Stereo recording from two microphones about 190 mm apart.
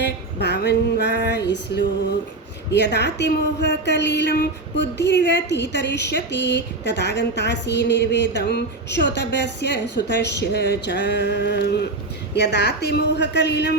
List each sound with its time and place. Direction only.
0.0 s a woman's voice: 60° left (ahead or behind)